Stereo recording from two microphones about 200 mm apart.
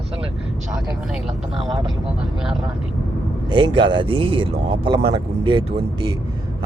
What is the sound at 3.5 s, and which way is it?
Speech, 25° right (ahead or behind).